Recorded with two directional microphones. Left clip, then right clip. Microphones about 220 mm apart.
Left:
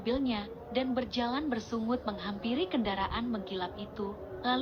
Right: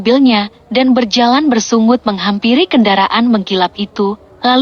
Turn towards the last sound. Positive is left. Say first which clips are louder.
# right 19 dB
turn(degrees=-50)  # may be behind; listen again after turning